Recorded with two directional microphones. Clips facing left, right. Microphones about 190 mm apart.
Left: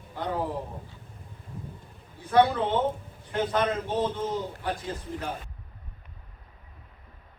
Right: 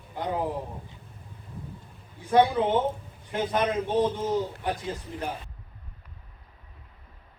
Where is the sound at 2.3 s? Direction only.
15° right (ahead or behind).